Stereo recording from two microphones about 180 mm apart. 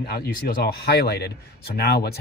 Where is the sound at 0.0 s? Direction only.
60° left (ahead or behind).